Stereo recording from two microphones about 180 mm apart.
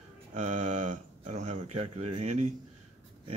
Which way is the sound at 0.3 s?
40° right (ahead or behind).